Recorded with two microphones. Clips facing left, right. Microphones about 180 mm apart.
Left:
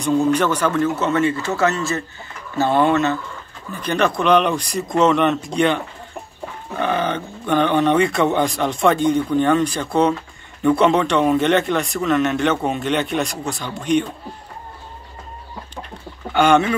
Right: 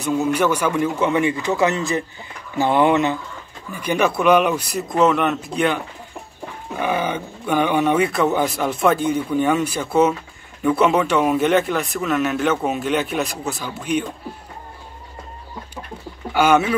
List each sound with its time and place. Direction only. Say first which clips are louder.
0.0 s a man's voice: left 2 dB; 5° right (ahead or behind)
6.8 s a man's voice: left 1 dB; 10° right (ahead or behind)
16.3 s a man's voice: left 1 dB; 5° right (ahead or behind)